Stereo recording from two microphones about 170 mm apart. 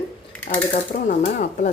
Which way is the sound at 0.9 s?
50° left (ahead or behind).